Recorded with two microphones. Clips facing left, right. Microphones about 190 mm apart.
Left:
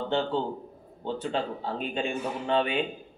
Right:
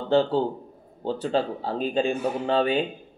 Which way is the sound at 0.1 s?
35° right (ahead or behind).